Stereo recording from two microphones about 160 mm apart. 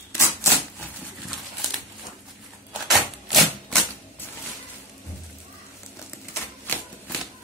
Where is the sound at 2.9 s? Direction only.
Centre (ahead or behind).